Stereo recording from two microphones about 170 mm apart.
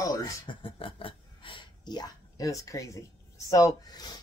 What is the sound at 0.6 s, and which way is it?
Speech, 30° left (ahead or behind).